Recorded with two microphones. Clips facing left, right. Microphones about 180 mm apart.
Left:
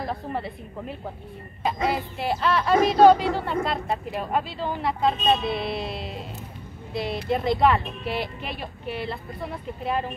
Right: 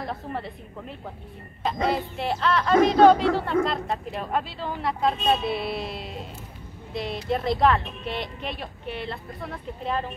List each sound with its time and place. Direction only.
0.0 s speech: centre (ahead or behind)